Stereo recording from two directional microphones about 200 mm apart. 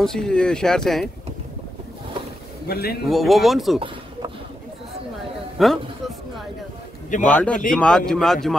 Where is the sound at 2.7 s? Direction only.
50° left (ahead or behind).